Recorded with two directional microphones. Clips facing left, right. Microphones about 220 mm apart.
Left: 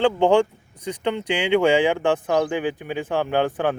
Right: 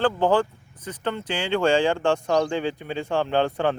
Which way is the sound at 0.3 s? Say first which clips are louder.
Left 4 dB; 15° left (ahead or behind).